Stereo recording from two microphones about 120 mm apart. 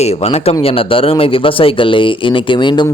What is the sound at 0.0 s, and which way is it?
Speech, 60° left (ahead or behind).